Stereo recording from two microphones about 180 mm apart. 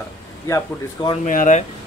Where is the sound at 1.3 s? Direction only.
45° left (ahead or behind).